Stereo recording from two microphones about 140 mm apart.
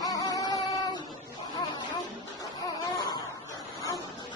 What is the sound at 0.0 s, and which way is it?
Music, 25° left (ahead or behind).